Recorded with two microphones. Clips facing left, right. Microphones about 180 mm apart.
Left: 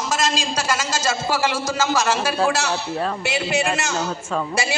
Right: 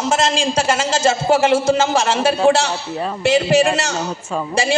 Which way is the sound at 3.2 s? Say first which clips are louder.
Right 8 dB; 35° right (ahead or behind).